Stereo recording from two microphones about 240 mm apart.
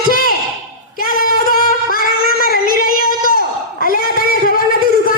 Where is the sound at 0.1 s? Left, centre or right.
Left.